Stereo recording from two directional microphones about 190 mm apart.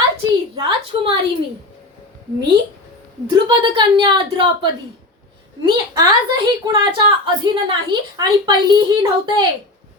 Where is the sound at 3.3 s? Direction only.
25° right (ahead or behind).